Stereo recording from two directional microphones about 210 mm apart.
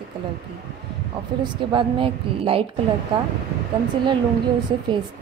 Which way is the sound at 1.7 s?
25° right (ahead or behind).